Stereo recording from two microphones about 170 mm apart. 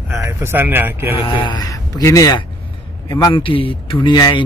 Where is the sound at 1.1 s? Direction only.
30° left (ahead or behind).